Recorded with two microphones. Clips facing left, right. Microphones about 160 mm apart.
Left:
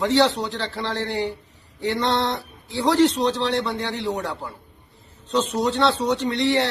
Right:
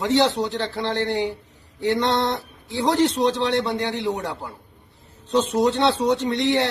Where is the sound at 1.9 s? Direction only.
55° right (ahead or behind).